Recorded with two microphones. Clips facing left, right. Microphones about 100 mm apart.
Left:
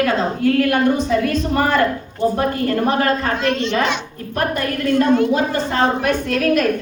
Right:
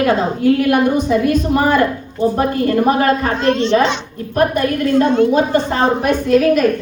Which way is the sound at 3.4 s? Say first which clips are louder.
Right 5 dB; 30° right (ahead or behind).